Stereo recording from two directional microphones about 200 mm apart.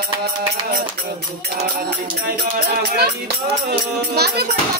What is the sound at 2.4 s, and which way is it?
Speech, 55° right (ahead or behind).